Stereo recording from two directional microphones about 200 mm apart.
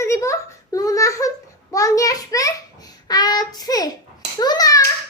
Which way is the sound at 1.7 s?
15° left (ahead or behind).